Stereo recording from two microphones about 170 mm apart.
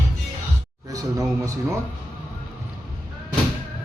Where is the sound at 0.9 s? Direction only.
20° right (ahead or behind).